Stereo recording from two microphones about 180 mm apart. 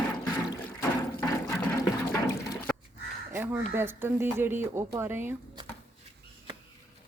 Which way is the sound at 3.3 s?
10° right (ahead or behind).